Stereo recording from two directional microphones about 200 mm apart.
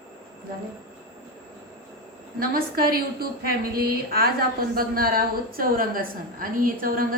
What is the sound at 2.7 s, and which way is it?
A woman's voice, 50° right (ahead or behind).